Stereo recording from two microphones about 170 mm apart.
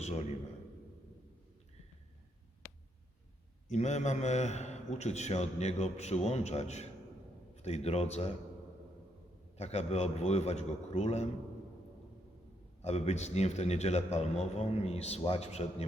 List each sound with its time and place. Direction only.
3.7 s a man's voice: 45° left (ahead or behind)
9.6 s a man's voice: 40° left (ahead or behind)
12.8 s a man's voice: 40° left (ahead or behind)